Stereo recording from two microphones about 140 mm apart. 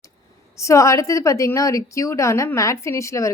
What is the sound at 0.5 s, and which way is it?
A woman's voice, 20° left (ahead or behind).